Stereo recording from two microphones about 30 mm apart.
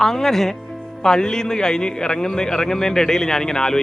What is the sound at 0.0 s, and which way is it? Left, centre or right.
Speech, centre.